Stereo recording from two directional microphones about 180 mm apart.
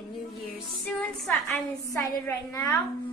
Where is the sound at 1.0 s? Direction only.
10° left (ahead or behind).